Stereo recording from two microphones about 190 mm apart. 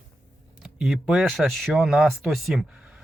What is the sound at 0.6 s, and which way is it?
Speech, 5° right (ahead or behind).